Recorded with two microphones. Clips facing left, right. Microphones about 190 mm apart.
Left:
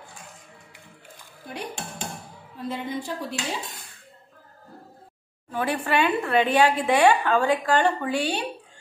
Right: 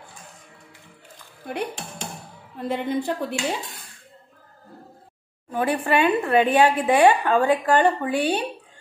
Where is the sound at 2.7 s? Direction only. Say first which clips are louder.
Right 6 dB; 60° right (ahead or behind).